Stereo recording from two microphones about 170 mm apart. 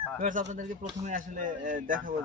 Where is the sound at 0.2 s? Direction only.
45° right (ahead or behind).